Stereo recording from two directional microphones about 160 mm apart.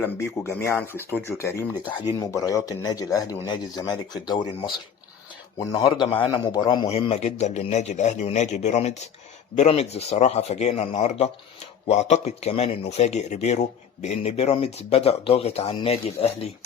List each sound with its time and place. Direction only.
0.0 s speech: 15° left (ahead or behind)
5.5 s speech: 25° left (ahead or behind)
6.8 s a man's voice: 40° left (ahead or behind)